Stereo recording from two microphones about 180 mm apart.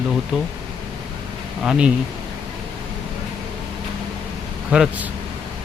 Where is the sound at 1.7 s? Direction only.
5° right (ahead or behind).